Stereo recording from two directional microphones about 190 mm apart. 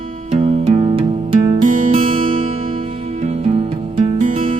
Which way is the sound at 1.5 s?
45° right (ahead or behind).